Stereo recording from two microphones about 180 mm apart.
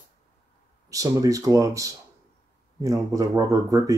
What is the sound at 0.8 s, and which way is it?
Speech, 20° right (ahead or behind).